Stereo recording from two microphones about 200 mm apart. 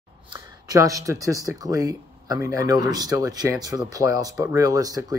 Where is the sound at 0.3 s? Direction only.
15° right (ahead or behind).